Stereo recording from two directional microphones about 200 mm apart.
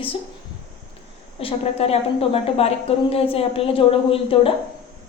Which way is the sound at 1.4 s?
30° left (ahead or behind).